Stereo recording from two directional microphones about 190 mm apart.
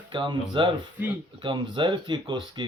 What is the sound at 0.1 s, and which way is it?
Speech, 25° right (ahead or behind).